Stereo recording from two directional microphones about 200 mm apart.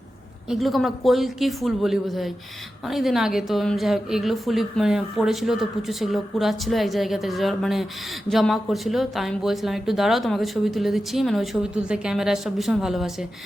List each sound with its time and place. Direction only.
0.5 s a woman's voice: centre (ahead or behind)